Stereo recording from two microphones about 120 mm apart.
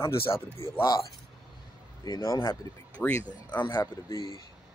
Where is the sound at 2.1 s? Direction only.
30° left (ahead or behind).